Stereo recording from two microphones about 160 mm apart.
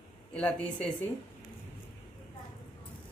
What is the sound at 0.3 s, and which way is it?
Speech, 5° left (ahead or behind).